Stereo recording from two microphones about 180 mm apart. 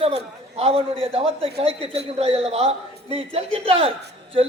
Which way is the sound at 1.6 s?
35° right (ahead or behind).